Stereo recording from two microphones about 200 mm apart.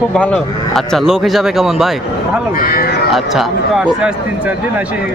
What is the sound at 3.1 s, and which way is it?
Speech, 5° right (ahead or behind).